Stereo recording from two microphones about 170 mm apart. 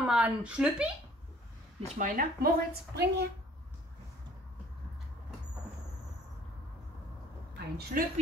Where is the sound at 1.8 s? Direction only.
50° right (ahead or behind); by 3.3 s 75° right (ahead or behind).